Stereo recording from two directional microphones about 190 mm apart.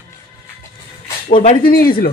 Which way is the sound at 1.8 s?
50° left (ahead or behind).